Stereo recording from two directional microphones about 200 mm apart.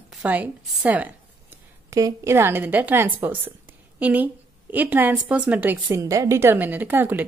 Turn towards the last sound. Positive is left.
turn(degrees=-10)  # may be behind; listen again after turning